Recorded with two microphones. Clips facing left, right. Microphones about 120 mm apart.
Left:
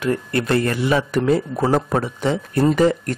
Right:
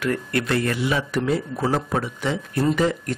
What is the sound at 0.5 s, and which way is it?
A man's voice, 45° left (ahead or behind).